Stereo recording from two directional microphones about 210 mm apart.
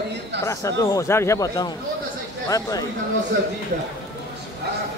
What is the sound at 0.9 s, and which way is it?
Speech, 15° left (ahead or behind).